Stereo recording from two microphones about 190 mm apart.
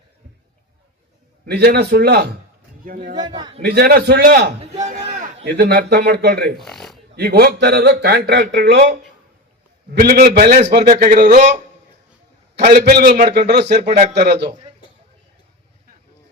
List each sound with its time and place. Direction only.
1.5 s speech: 60° right (ahead or behind)
2.8 s speech: 45° right (ahead or behind)
3.2 s a man's voice: 25° right (ahead or behind)
3.6 s speech: 60° right (ahead or behind)
4.8 s a sound: 40° right (ahead or behind)
5.5 s speech: 60° right (ahead or behind)
6.6 s speech: centre (ahead or behind)
7.2 s speech: 55° right (ahead or behind)
10.0 s speech: 55° right (ahead or behind)
12.5 s speech: 60° right (ahead or behind)
13.8 s a man's voice: 40° right (ahead or behind)
14.3 s speech: 60° right (ahead or behind)